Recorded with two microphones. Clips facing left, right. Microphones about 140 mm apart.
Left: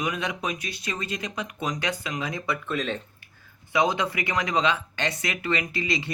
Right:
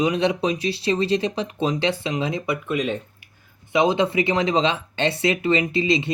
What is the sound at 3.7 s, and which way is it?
Speech, 25° right (ahead or behind).